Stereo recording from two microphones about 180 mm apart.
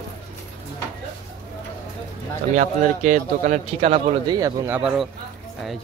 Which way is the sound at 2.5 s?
40° right (ahead or behind).